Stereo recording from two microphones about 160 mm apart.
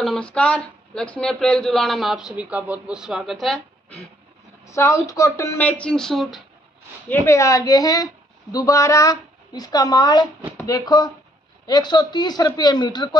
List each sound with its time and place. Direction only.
0.0 s speech: 5° left (ahead or behind)
4.6 s speech: 20° left (ahead or behind); by 6.4 s centre (ahead or behind)
7.1 s a woman's voice: 15° left (ahead or behind)